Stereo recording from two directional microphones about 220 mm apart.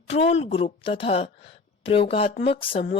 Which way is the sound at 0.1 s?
30° left (ahead or behind).